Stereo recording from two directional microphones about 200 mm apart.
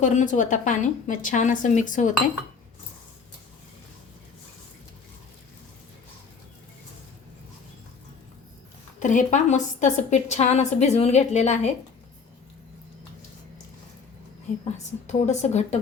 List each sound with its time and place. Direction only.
0.0 s a woman's voice: 40° left (ahead or behind)
9.0 s a woman's voice: 40° left (ahead or behind)
14.6 s a woman's voice: 35° left (ahead or behind)